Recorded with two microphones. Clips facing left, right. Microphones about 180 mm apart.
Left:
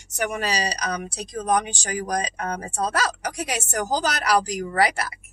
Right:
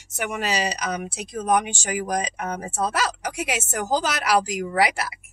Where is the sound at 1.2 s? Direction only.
5° right (ahead or behind).